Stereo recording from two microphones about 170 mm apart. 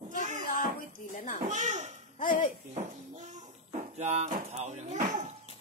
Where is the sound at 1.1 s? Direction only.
50° left (ahead or behind).